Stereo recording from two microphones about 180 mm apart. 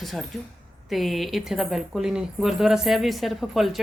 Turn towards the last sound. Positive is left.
turn(degrees=0)  # may be behind; listen again after turning